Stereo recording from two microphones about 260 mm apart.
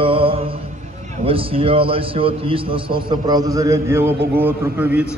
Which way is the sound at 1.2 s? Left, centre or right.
Right.